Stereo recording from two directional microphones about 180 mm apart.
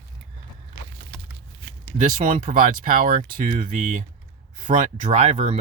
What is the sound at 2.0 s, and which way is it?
Speech, 50° right (ahead or behind).